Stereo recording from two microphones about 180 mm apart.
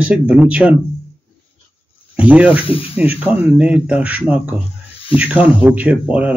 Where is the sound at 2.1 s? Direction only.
5° right (ahead or behind).